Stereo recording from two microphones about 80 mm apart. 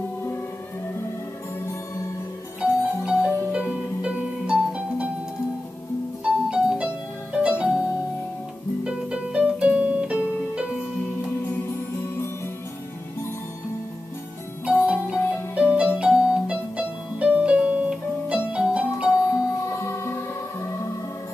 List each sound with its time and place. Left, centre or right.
3.1 s music: centre
6.2 s music: centre
8.8 s music: centre
14.7 s music: centre
19.6 s music: left